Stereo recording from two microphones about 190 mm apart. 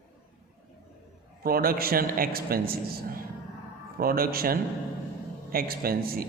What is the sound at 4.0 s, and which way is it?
A man's voice, 50° right (ahead or behind).